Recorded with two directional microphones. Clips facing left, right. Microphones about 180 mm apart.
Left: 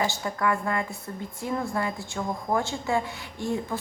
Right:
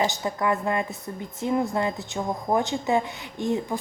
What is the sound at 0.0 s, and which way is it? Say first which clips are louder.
A woman's voice: right 2 dB; 20° right (ahead or behind).